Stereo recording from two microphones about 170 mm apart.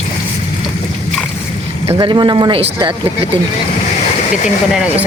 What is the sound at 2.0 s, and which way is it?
Speech, 25° right (ahead or behind).